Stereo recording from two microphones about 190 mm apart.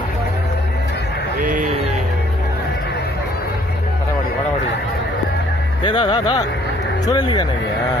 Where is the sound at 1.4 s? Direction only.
45° right (ahead or behind).